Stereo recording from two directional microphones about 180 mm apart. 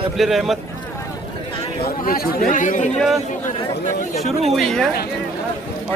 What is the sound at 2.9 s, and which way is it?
Speech, centre (ahead or behind).